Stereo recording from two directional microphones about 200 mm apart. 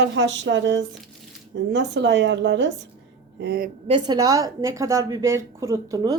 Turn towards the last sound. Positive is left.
turn(degrees=-15)  # may be behind; listen again after turning